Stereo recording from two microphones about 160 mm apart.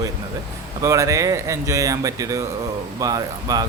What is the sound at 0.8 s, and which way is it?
Speech, 20° right (ahead or behind).